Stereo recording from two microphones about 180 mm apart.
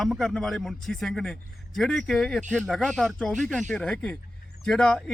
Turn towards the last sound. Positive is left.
turn(degrees=5)  # may be behind; listen again after turning